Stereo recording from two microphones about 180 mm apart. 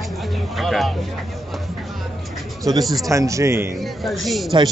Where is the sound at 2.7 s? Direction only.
20° right (ahead or behind).